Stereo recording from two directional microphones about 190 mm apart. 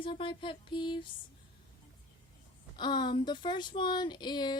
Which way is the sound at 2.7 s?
25° left (ahead or behind).